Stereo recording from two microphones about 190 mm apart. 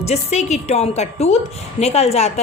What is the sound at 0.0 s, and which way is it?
A woman's voice, 35° left (ahead or behind).